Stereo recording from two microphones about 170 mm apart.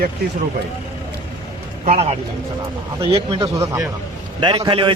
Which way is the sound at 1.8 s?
40° right (ahead or behind).